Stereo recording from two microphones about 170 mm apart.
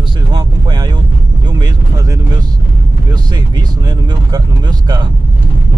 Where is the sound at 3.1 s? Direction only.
25° right (ahead or behind).